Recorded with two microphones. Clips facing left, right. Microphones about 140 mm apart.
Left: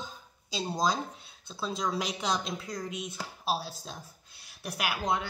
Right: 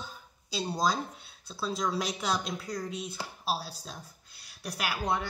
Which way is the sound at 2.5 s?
20° left (ahead or behind).